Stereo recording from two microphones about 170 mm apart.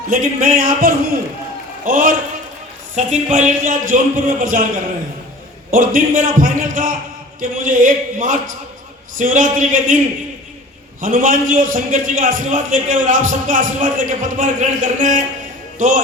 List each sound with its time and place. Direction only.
0.1 s a man's voice: 50° right (ahead or behind)
5.7 s a man's voice: 55° right (ahead or behind)
11.0 s a man's voice: 50° right (ahead or behind)